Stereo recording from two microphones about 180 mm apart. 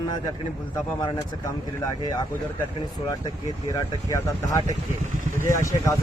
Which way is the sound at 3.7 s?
15° left (ahead or behind).